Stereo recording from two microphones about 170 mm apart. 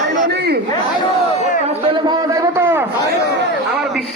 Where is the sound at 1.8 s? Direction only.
30° right (ahead or behind); by 2.9 s 15° right (ahead or behind).